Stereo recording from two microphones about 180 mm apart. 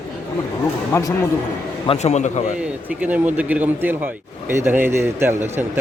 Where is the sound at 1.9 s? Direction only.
40° left (ahead or behind).